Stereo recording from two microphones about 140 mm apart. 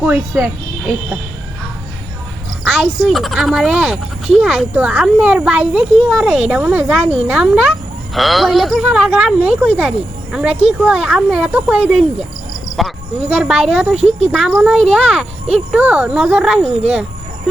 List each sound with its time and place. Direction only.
0.0 s speech: 10° right (ahead or behind)
2.6 s speech: centre (ahead or behind)
13.9 s speech: 50° right (ahead or behind)
14.3 s speech: centre (ahead or behind)